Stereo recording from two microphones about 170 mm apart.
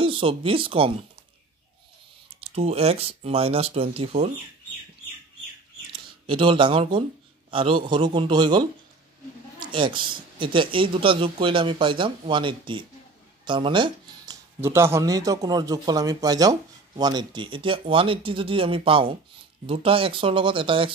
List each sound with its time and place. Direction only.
0.0 s speech: 30° right (ahead or behind)
2.2 s speech: 35° right (ahead or behind)
6.2 s speech: 30° right (ahead or behind)
14.6 s speech: 15° right (ahead or behind); by 20.9 s 30° right (ahead or behind)